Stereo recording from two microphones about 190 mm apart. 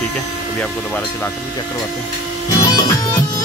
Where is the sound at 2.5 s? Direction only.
20° left (ahead or behind).